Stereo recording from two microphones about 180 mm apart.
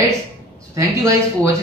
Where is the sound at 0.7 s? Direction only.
15° right (ahead or behind).